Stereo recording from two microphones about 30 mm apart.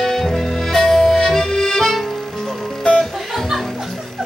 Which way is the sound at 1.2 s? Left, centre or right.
Centre.